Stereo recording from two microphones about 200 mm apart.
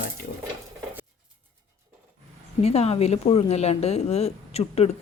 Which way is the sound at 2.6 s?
30° left (ahead or behind).